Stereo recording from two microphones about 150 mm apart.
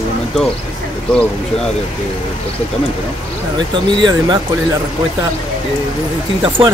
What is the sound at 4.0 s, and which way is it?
Speech, 30° right (ahead or behind).